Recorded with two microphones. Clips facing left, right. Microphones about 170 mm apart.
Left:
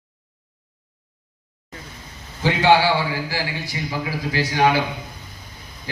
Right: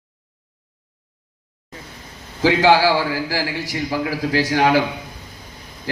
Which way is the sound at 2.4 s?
90° right.